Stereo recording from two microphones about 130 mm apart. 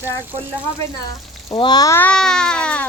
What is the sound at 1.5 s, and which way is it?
Frying, 35° left (ahead or behind).